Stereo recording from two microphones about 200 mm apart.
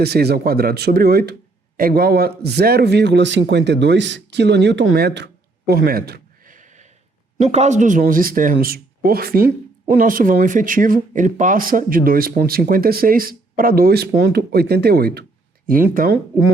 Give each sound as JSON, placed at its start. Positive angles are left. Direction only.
{"t": 0.0, "sound": "speech", "side_deg": -55}